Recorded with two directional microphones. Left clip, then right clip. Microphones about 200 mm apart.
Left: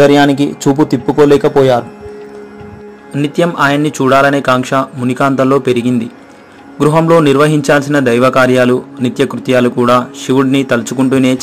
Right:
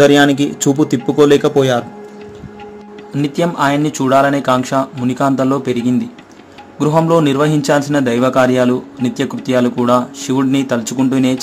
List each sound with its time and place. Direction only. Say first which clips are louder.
0.0 s a man's voice: left 2 dB; 15° left (ahead or behind)
3.5 s a man's voice: left 3 dB; 15° left (ahead or behind)